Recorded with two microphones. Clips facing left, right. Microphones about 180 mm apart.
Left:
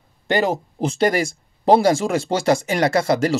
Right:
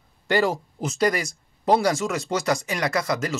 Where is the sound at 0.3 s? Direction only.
20° left (ahead or behind).